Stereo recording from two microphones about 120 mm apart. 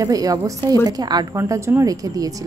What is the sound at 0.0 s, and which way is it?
A woman's voice, 30° right (ahead or behind).